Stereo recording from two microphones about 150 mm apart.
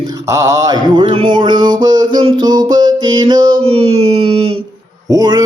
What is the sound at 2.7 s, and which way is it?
Music, 30° right (ahead or behind).